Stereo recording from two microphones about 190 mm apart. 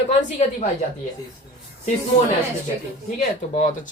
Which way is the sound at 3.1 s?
40° left (ahead or behind).